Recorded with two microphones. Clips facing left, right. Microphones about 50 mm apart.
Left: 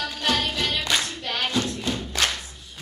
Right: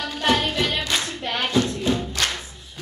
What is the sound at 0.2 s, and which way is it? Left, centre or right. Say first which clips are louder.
Music: right 4 dB; centre.